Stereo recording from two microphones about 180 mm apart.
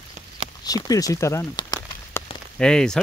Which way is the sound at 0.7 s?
20° left (ahead or behind).